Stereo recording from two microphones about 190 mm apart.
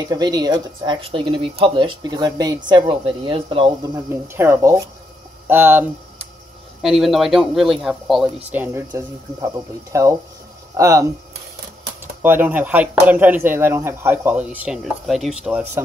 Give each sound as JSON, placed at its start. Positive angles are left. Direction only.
{"t": 0.1, "sound": "speech", "side_deg": -20}
{"t": 12.2, "sound": "speech", "side_deg": -10}